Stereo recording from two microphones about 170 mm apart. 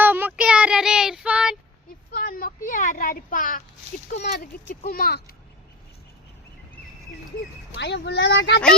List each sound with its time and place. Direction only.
0.0 s child singing: 10° right (ahead or behind)
2.1 s a sound: 60° left (ahead or behind)
4.9 s speech: 60° left (ahead or behind)
7.8 s speech: 90° left